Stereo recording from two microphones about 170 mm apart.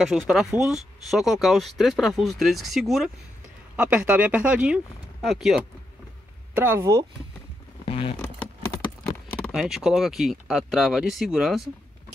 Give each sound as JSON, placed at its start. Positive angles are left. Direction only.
{"t": 0.0, "sound": "speech", "side_deg": 0}
{"t": 6.5, "sound": "speech", "side_deg": -10}
{"t": 7.8, "sound": "creak", "side_deg": 35}
{"t": 9.3, "sound": "speech", "side_deg": 0}